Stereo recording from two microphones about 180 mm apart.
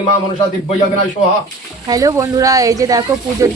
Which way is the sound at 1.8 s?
20° right (ahead or behind).